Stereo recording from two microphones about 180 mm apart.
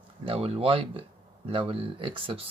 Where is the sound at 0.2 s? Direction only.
30° right (ahead or behind).